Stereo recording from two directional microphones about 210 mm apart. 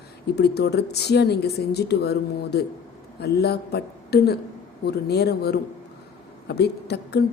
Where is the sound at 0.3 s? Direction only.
50° left (ahead or behind).